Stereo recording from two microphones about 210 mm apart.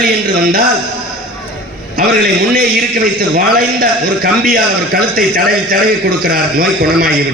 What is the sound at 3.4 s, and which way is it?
A man's voice, 45° right (ahead or behind).